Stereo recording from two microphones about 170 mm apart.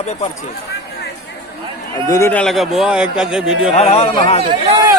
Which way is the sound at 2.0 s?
20° left (ahead or behind).